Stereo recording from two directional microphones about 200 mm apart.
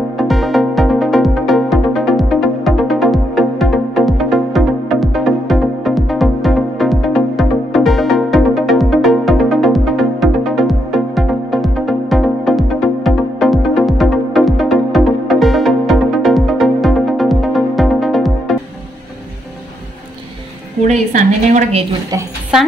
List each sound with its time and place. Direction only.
0.2 s music: centre (ahead or behind)
20.8 s a sound: 35° right (ahead or behind)
22.5 s a woman's voice: 5° right (ahead or behind)